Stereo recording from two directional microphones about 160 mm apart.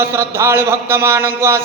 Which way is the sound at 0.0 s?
15° right (ahead or behind).